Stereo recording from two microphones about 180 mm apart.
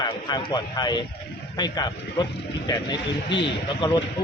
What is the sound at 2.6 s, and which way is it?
Speech, 25° left (ahead or behind).